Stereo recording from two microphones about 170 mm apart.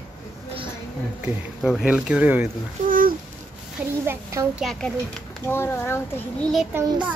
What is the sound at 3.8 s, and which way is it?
Speech, 15° right (ahead or behind).